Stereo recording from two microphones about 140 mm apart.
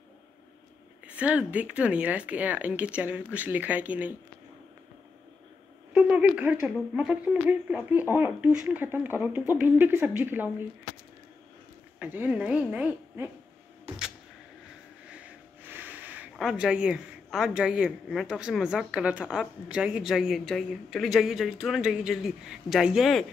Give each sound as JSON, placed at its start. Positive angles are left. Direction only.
{"t": 1.0, "sound": "speech", "side_deg": -10}
{"t": 5.9, "sound": "a woman's voice", "side_deg": -10}
{"t": 12.0, "sound": "speech", "side_deg": -10}
{"t": 13.9, "sound": "a sound", "side_deg": -40}
{"t": 15.6, "sound": "a woman's voice", "side_deg": -15}